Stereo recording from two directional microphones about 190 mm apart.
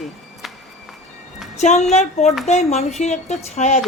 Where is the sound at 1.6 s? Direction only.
35° left (ahead or behind).